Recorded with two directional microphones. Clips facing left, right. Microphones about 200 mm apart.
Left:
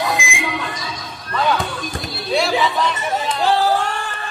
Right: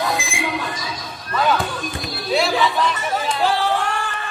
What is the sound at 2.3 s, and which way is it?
Chatter, centre (ahead or behind).